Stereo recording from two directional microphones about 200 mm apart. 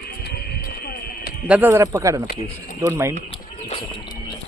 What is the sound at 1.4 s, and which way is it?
A man's voice, 10° right (ahead or behind).